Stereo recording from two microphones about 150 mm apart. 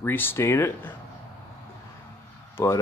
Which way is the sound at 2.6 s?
15° left (ahead or behind).